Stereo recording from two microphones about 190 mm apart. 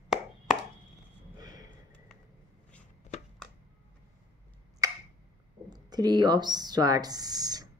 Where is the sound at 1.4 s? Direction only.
20° right (ahead or behind).